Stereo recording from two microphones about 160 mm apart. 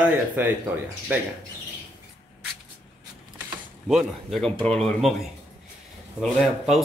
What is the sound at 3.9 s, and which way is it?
Speech, centre (ahead or behind).